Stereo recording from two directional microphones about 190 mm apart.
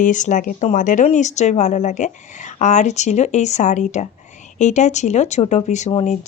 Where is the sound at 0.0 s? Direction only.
40° left (ahead or behind).